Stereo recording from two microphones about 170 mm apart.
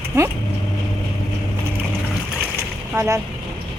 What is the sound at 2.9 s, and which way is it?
Speech, 20° right (ahead or behind).